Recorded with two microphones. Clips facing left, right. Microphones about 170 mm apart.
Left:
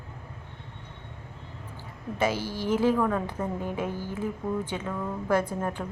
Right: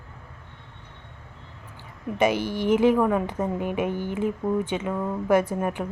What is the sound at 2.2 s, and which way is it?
A woman's voice, 15° right (ahead or behind).